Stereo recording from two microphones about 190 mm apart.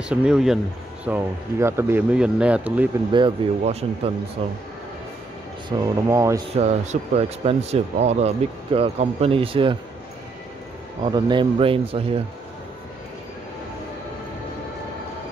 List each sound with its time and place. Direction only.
0.1 s speech: 5° right (ahead or behind)
3.1 s speech: 25° right (ahead or behind)
5.7 s speech: 15° right (ahead or behind)
6.5 s speech: 35° right (ahead or behind)
11.1 s speech: 25° right (ahead or behind)